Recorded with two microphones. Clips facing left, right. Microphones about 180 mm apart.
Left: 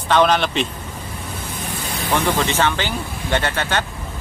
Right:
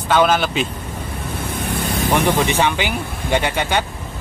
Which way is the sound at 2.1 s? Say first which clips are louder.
Right 2 dB; 15° right (ahead or behind).